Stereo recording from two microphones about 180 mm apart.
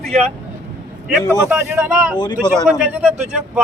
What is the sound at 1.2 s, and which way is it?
Speech, 15° right (ahead or behind).